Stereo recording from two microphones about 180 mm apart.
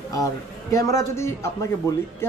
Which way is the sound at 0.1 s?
20° left (ahead or behind).